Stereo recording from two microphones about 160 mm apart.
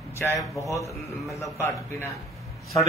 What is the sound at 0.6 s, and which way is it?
A man's voice, 20° left (ahead or behind).